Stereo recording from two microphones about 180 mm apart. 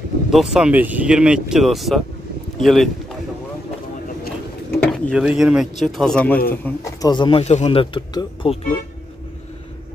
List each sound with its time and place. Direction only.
0.3 s speech: centre (ahead or behind)
4.7 s a sound: 5° left (ahead or behind)
5.1 s speech: 5° right (ahead or behind); by 8.5 s 25° left (ahead or behind)